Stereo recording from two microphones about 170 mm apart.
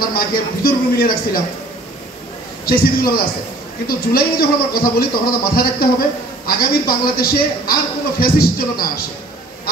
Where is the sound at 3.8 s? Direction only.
60° left (ahead or behind).